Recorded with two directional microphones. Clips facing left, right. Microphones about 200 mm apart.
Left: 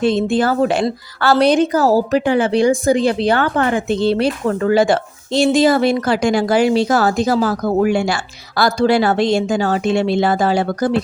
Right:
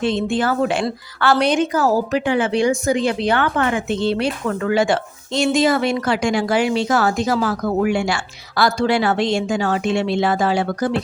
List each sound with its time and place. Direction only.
0.0 s a woman's voice: 40° left (ahead or behind)